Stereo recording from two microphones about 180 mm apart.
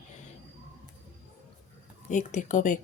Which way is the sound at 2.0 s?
40° left (ahead or behind).